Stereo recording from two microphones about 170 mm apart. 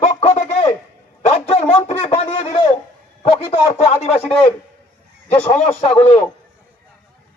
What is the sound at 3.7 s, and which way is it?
Speech, 40° left (ahead or behind).